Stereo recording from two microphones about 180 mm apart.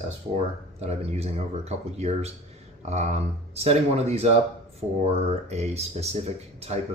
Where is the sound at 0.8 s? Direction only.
35° right (ahead or behind).